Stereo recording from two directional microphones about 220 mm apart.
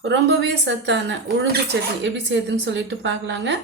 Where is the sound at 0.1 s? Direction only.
50° right (ahead or behind).